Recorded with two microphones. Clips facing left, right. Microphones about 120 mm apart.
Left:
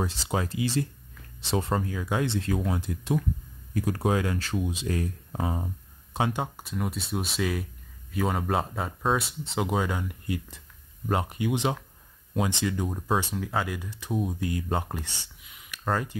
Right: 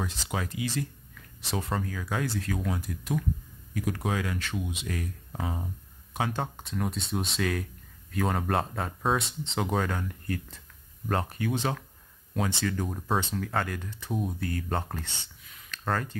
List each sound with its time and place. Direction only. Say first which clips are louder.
0.0 s speech: left 4 dB; 30° left (ahead or behind)
6.3 s speech: left 1 dB; 5° left (ahead or behind)